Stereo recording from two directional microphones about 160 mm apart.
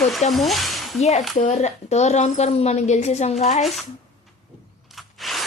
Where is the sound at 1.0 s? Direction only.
45° left (ahead or behind).